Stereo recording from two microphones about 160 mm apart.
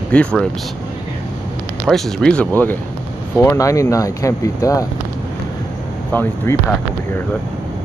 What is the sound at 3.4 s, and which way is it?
Speech, 20° left (ahead or behind).